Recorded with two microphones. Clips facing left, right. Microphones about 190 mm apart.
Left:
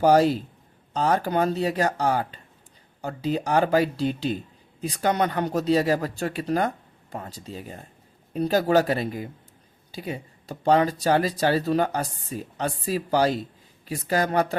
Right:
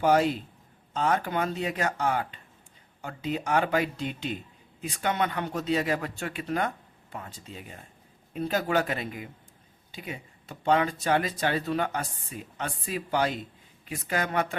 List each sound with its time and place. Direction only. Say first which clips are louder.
0.0 s speech: left 5 dB; 35° left (ahead or behind)